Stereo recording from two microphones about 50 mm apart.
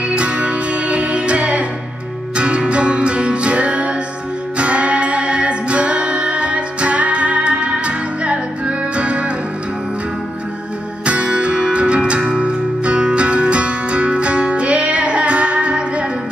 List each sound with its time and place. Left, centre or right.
0.1 s music: right
11.1 s music: right